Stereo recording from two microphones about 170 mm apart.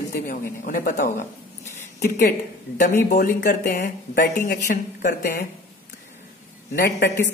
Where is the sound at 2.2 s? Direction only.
60° left (ahead or behind).